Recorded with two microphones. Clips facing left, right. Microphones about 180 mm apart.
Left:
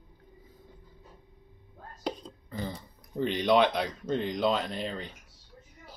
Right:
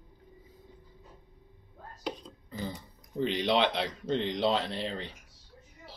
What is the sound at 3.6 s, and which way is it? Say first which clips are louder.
Speech: left 3 dB; 25° right (ahead or behind).